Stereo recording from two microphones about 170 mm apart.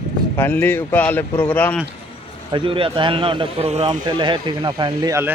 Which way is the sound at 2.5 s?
30° right (ahead or behind).